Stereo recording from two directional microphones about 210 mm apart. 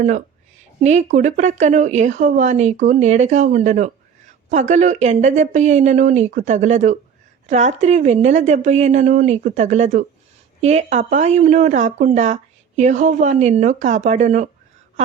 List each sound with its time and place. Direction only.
0.8 s speech: 35° right (ahead or behind)